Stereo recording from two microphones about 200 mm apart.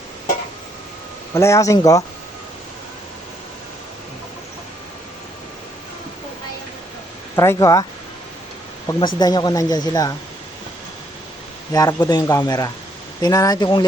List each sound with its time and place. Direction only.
1.3 s speech: 15° left (ahead or behind)
7.3 s speech: 15° left (ahead or behind)
8.9 s speech: 20° left (ahead or behind)
11.7 s speech: 20° left (ahead or behind)